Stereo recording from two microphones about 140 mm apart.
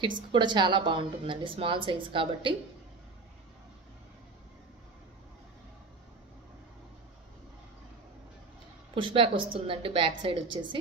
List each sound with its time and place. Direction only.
0.0 s a woman's voice: 35° right (ahead or behind)
8.9 s a woman's voice: 40° right (ahead or behind)